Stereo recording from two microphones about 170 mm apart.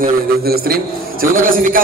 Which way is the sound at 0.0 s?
60° right (ahead or behind).